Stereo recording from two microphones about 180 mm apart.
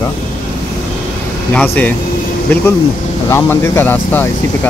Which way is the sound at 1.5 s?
10° left (ahead or behind).